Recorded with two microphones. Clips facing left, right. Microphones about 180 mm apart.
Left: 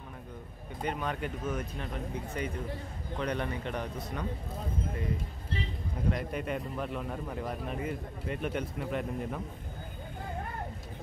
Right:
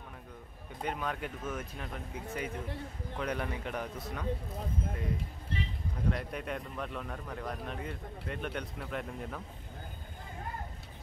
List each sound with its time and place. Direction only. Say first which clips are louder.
0.8 s a man's voice: left 2 dB; centre (ahead or behind)
6.1 s a man's voice: left 3 dB; centre (ahead or behind)